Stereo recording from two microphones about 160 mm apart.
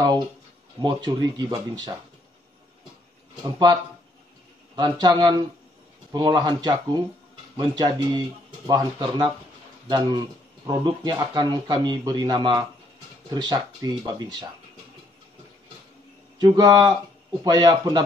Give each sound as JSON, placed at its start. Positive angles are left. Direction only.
{"t": 0.7, "sound": "speech", "side_deg": -25}
{"t": 3.4, "sound": "speech", "side_deg": -25}
{"t": 4.7, "sound": "speech", "side_deg": -25}
{"t": 16.3, "sound": "speech", "side_deg": -25}